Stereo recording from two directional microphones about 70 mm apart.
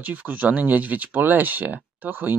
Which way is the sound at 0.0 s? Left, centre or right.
Right.